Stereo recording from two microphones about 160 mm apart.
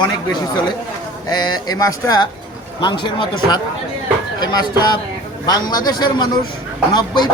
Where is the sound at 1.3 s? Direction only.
25° left (ahead or behind).